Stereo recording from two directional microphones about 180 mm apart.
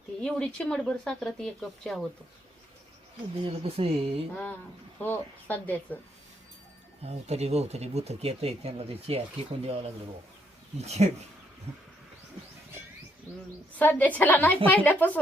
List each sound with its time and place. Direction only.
0.2 s speech: 5° left (ahead or behind)
3.4 s speech: 30° right (ahead or behind)
4.9 s a woman's voice: 10° left (ahead or behind)
7.0 s speech: 35° right (ahead or behind)
13.7 s a woman's voice: 10° left (ahead or behind)